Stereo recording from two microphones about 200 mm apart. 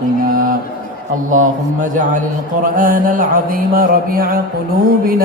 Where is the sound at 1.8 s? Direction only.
40° right (ahead or behind).